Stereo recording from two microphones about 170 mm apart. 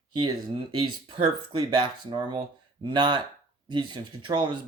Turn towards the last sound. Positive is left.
turn(degrees=-25)  # may be behind; listen again after turning